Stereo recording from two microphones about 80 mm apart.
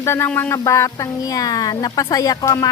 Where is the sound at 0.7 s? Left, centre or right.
Left.